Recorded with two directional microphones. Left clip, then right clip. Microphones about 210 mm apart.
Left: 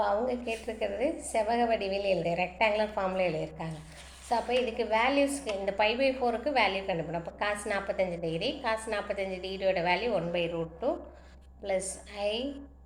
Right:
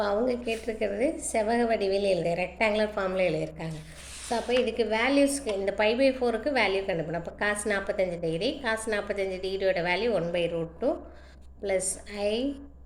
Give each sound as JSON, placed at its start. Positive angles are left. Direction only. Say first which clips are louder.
{"t": 0.0, "sound": "a woman's voice", "louder": "right 2 dB", "side_deg": -45}